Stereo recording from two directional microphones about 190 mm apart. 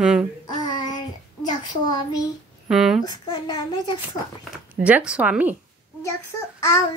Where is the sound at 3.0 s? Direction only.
20° left (ahead or behind).